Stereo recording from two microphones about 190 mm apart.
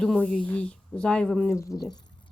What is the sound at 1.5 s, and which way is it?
Speech, 15° left (ahead or behind).